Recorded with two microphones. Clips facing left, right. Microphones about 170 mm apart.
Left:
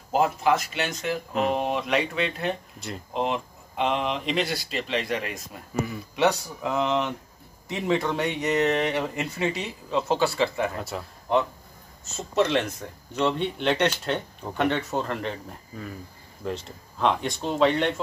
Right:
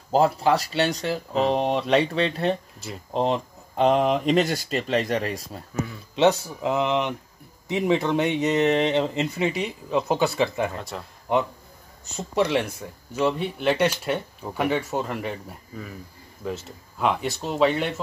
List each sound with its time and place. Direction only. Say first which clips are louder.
0.1 s speech: right 2 dB; 35° right (ahead or behind)
6.6 s speech: right 2 dB; 20° right (ahead or behind)
10.8 s speech: left 2 dB; 5° left (ahead or behind)
12.1 s speech: even; 10° right (ahead or behind)
16.4 s speech: even; 5° right (ahead or behind)